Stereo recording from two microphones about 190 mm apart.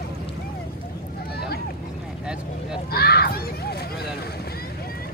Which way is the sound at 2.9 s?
55° left (ahead or behind).